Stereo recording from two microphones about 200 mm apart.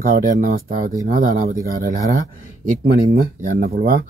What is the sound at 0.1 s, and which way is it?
Speech, 45° right (ahead or behind).